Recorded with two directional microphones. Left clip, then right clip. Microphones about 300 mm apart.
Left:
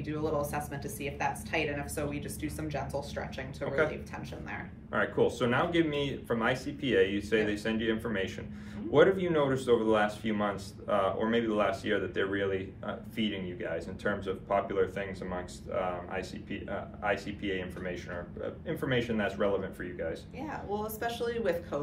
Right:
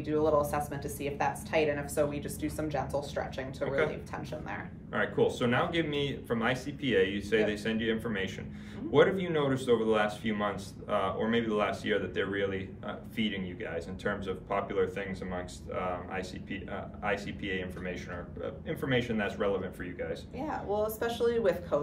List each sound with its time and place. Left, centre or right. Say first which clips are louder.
0.0 s a woman's voice: right 5 dB; centre
4.9 s a man's voice: even; centre
20.3 s a woman's voice: right 8 dB; centre